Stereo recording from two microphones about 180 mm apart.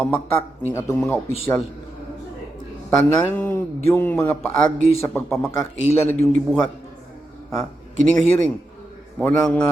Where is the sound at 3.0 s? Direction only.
10° left (ahead or behind).